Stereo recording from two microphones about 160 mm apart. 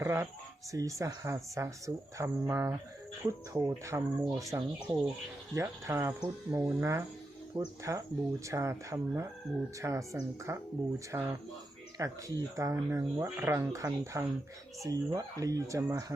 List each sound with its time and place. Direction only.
0.0 s a sound: 15° right (ahead or behind)
0.7 s speech: 20° right (ahead or behind)
2.1 s cricket: 20° right (ahead or behind)
4.4 s speech: 20° right (ahead or behind)
5.5 s cricket: 15° right (ahead or behind)
6.2 s speech: 20° right (ahead or behind)
13.2 s cricket: 15° right (ahead or behind)
14.8 s speech: 20° right (ahead or behind)